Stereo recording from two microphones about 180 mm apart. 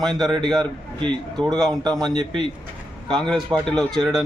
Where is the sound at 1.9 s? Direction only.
25° right (ahead or behind).